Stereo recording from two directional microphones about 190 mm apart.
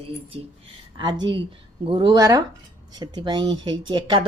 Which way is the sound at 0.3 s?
30° right (ahead or behind).